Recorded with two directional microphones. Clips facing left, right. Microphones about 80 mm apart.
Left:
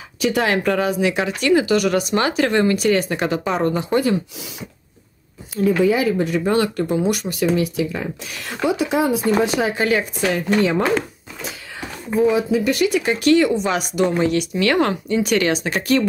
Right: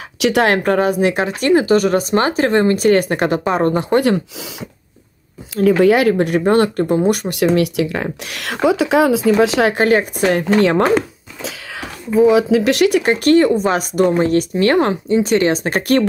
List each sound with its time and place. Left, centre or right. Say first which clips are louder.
0.2 s speech: right 4 dB; right
4.0 s speech: right 4 dB; right
5.6 s speech: right 5 dB; right
7.3 s speech: right 4 dB; right
8.9 s speech: right 5 dB; right
9.8 s speech: right 5 dB; right
11.7 s speech: right 5 dB; right